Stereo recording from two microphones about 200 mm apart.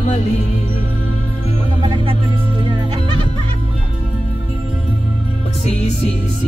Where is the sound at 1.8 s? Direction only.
25° right (ahead or behind).